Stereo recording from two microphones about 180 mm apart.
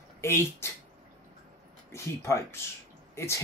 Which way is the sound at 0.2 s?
15° left (ahead or behind).